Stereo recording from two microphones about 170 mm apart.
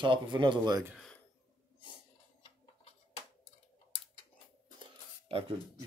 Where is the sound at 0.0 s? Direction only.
30° right (ahead or behind).